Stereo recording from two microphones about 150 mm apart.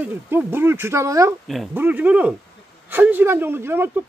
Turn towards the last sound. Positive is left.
turn(degrees=-15)  # may be behind; listen again after turning